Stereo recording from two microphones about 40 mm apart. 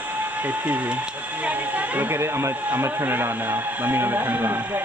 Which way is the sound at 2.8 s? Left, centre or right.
Right.